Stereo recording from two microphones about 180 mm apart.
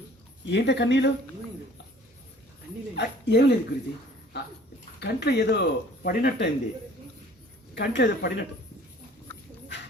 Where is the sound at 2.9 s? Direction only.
70° left (ahead or behind).